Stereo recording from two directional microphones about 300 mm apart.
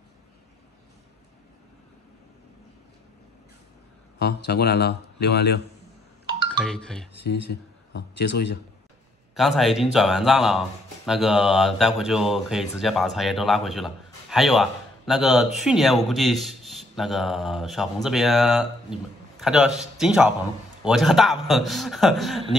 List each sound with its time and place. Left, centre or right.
4.2 s speech: left
6.2 s music: centre
6.6 s speech: centre
7.2 s speech: left
9.3 s speech: centre